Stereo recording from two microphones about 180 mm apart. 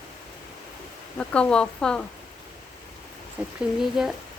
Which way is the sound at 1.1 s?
5° left (ahead or behind).